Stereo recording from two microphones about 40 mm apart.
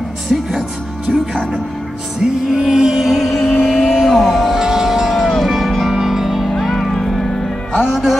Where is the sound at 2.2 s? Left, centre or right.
Centre.